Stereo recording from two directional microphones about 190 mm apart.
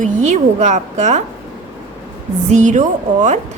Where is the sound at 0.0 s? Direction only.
40° right (ahead or behind).